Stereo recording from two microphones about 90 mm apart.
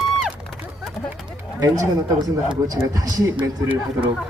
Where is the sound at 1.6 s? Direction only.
45° right (ahead or behind).